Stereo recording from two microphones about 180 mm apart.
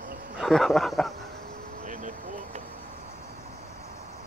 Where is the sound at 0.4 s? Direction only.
Centre (ahead or behind).